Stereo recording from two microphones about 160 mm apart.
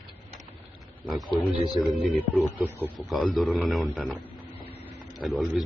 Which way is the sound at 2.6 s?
15° right (ahead or behind).